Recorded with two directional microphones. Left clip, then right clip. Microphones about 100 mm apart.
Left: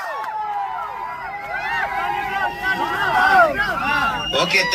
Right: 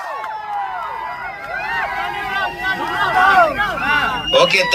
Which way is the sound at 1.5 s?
35° right (ahead or behind).